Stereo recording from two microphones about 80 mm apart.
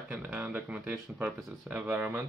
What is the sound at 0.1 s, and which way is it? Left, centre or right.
Speech, centre.